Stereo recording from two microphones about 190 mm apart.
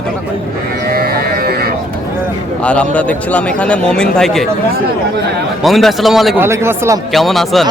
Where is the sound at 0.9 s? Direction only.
55° right (ahead or behind).